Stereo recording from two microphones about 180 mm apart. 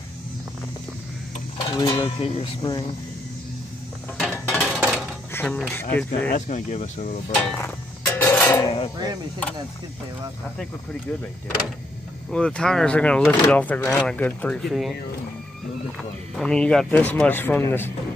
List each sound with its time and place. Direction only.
1.7 s speech: 20° left (ahead or behind)
4.2 s mechanisms: 5° left (ahead or behind)
4.7 s dishes: 5° right (ahead or behind)
5.3 s speech: 10° left (ahead or behind)
6.3 s speech: 40° left (ahead or behind)
7.5 s music: 10° left (ahead or behind)
10.6 s speech: 5° left (ahead or behind)
12.3 s speech: 5° left (ahead or behind)
16.3 s speech: 5° left (ahead or behind)